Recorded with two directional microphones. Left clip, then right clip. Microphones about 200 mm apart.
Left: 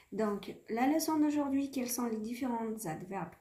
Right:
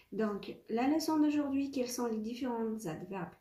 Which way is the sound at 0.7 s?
40° left (ahead or behind).